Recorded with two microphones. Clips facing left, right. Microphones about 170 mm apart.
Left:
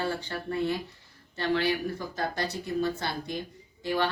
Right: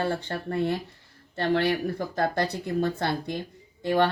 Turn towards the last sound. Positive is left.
turn(degrees=-50)  # may be behind; listen again after turning